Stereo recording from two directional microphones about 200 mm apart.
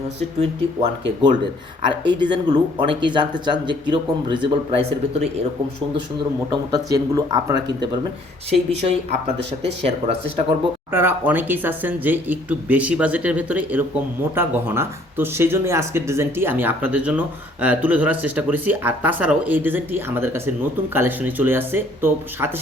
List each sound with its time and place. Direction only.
0.3 s speech: 30° right (ahead or behind)
2.3 s speech: 25° right (ahead or behind)
6.5 s speech: 20° right (ahead or behind)
8.4 s speech: 30° right (ahead or behind)
10.9 s speech: 10° right (ahead or behind)